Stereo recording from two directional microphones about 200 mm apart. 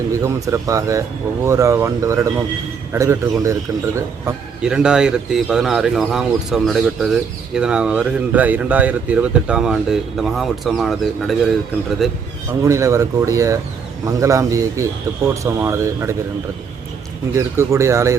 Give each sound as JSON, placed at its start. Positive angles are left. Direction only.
{"t": 0.1, "sound": "a man's voice", "side_deg": -15}
{"t": 4.6, "sound": "speech", "side_deg": -5}
{"t": 12.6, "sound": "a man's voice", "side_deg": -15}
{"t": 17.3, "sound": "a man's voice", "side_deg": -15}